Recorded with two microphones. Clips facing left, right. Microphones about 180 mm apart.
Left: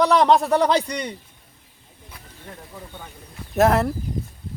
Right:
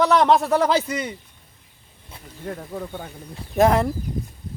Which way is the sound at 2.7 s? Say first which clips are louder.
Right 8 dB; 55° right (ahead or behind).